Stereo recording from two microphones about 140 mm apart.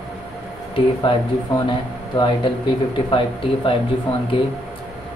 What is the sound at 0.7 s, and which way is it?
Speech, 35° left (ahead or behind).